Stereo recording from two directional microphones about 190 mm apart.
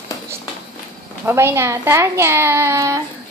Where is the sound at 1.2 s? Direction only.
15° right (ahead or behind).